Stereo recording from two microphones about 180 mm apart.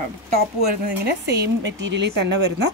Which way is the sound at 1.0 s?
65° right (ahead or behind).